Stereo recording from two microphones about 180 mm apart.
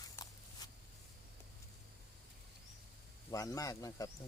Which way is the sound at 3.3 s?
20° left (ahead or behind).